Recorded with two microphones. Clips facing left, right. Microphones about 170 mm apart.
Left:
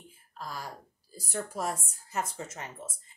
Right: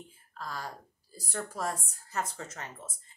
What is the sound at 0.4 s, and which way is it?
Speech, 10° left (ahead or behind).